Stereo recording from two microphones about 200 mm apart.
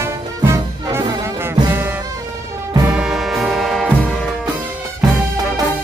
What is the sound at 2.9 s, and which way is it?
Music, centre (ahead or behind).